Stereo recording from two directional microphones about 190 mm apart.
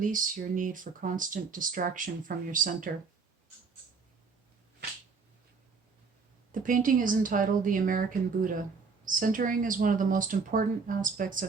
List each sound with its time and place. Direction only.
0.0 s speech: 45° right (ahead or behind)
6.5 s speech: 45° right (ahead or behind)
9.0 s speech: 45° right (ahead or behind)